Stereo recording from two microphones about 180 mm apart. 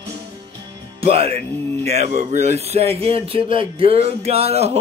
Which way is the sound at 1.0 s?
35° right (ahead or behind).